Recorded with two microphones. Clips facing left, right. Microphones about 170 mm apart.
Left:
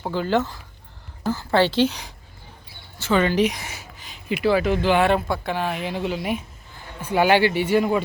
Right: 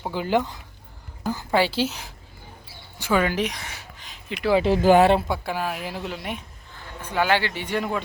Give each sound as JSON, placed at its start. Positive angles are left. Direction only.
{"t": 0.0, "sound": "a woman's voice", "side_deg": -15}
{"t": 4.5, "sound": "speech", "side_deg": -30}
{"t": 4.8, "sound": "speech", "side_deg": -40}
{"t": 5.3, "sound": "speech", "side_deg": -5}